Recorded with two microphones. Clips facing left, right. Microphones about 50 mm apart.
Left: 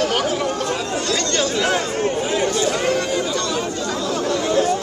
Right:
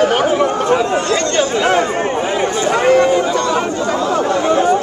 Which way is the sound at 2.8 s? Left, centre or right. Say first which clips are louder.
Right 9 dB; right.